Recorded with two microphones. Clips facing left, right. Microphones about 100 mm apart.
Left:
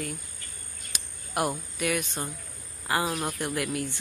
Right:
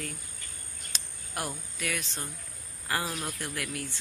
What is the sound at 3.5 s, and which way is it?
Speech, 20° left (ahead or behind).